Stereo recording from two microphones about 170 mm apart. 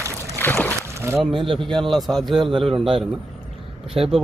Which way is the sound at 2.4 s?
30° right (ahead or behind).